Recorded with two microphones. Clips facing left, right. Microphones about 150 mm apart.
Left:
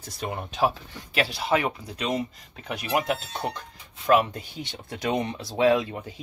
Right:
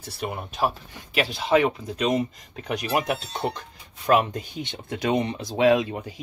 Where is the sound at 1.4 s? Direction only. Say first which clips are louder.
Right 7 dB; 20° right (ahead or behind).